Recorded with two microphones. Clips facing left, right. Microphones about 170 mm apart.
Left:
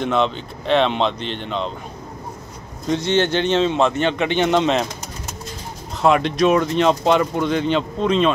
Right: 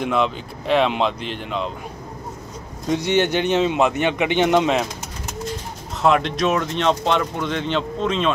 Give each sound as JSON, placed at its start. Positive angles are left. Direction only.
{"t": 0.0, "sound": "a man's voice", "side_deg": -5}
{"t": 2.9, "sound": "a man's voice", "side_deg": -15}
{"t": 6.0, "sound": "speech", "side_deg": 0}